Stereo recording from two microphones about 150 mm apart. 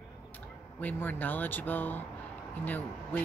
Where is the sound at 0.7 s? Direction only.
10° left (ahead or behind).